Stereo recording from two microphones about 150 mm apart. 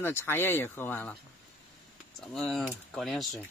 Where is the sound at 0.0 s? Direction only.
15° left (ahead or behind).